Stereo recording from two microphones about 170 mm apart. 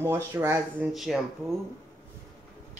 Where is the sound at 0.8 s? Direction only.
Centre (ahead or behind).